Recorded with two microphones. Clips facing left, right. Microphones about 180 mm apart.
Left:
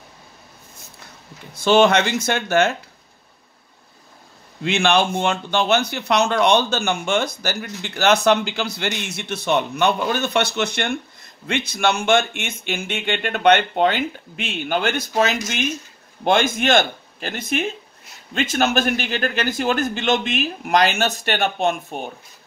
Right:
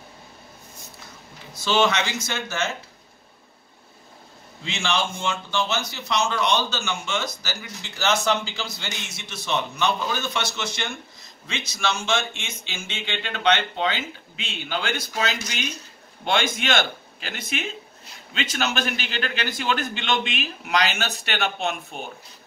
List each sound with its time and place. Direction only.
1.6 s speech: 55° left (ahead or behind)
4.6 s a man's voice: 60° left (ahead or behind)